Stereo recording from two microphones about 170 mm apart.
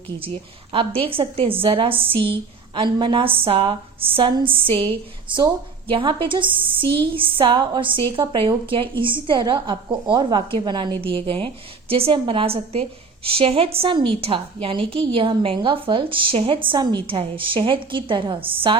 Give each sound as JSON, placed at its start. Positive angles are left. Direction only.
{"t": 0.7, "sound": "a woman's voice", "side_deg": -30}